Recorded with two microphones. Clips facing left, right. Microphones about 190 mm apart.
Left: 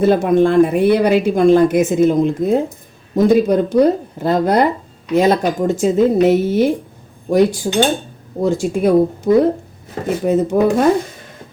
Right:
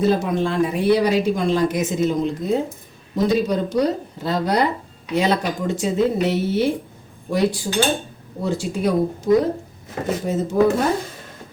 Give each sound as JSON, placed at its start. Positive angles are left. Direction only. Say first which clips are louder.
{"t": 0.0, "sound": "a woman's voice", "louder": "left 7 dB", "side_deg": 55}